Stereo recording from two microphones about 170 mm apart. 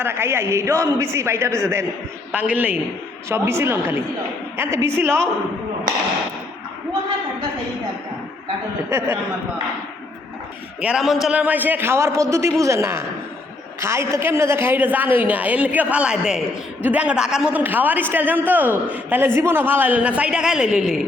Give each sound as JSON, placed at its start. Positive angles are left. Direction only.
{"t": 0.0, "sound": "a man's voice", "side_deg": -15}
{"t": 8.9, "sound": "a man's voice", "side_deg": -15}
{"t": 10.8, "sound": "a man's voice", "side_deg": -5}